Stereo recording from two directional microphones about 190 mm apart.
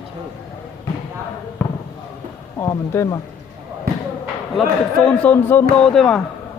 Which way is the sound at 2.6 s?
15° left (ahead or behind).